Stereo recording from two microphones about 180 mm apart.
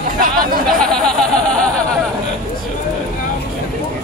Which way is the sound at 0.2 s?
50° right (ahead or behind).